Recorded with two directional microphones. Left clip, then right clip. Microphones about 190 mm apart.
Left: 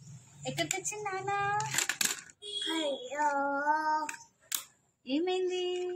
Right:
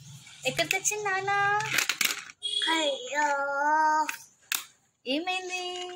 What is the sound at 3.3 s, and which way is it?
Speech, centre (ahead or behind).